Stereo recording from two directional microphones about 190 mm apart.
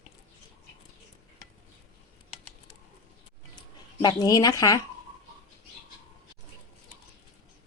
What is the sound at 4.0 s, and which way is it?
Speech, 20° left (ahead or behind).